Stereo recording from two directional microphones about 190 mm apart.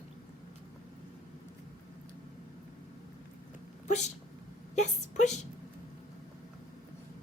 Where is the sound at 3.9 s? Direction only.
35° left (ahead or behind).